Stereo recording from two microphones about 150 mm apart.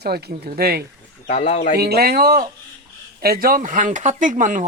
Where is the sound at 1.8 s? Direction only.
90° right.